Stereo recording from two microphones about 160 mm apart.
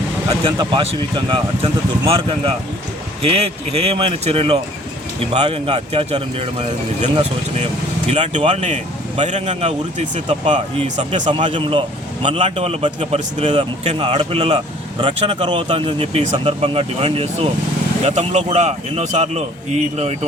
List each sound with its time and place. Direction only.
0.5 s a man's voice: 30° right (ahead or behind)